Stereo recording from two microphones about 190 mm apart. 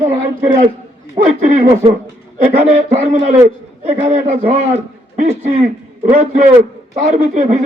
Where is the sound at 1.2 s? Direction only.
30° right (ahead or behind).